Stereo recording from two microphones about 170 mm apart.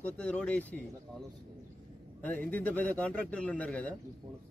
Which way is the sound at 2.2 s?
10° left (ahead or behind).